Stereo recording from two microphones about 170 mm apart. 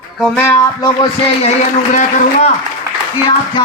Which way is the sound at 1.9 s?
45° left (ahead or behind).